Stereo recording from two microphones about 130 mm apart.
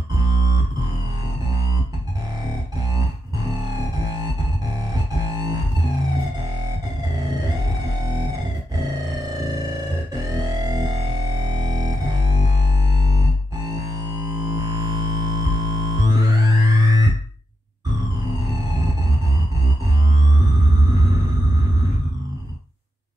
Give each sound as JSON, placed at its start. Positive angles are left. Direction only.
{"t": 0.2, "sound": "music", "side_deg": -30}
{"t": 5.3, "sound": "music", "side_deg": -30}
{"t": 10.3, "sound": "music", "side_deg": -30}